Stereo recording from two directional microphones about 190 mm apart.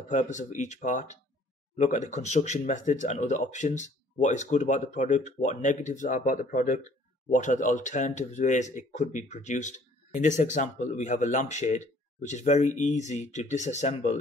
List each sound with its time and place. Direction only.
0.1 s speech: 40° left (ahead or behind)